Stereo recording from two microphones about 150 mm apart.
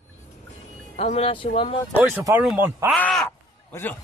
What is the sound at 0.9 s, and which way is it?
Speech, 45° left (ahead or behind).